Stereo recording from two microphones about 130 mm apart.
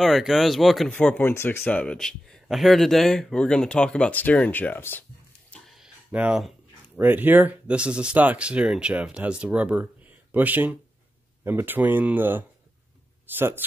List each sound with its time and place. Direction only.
0.0 s speech: centre (ahead or behind)
0.9 s speech: 10° left (ahead or behind)
5.5 s a sound: centre (ahead or behind)
6.1 s speech: 5° right (ahead or behind)